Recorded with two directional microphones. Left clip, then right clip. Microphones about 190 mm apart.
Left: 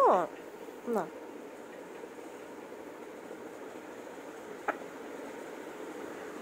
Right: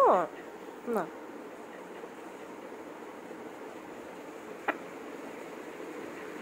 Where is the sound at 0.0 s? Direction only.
Centre (ahead or behind).